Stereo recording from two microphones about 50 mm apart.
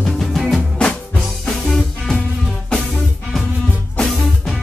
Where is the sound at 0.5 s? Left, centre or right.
Centre.